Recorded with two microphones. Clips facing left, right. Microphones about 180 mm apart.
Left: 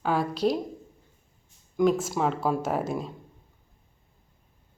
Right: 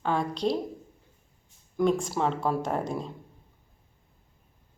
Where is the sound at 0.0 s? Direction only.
5° left (ahead or behind).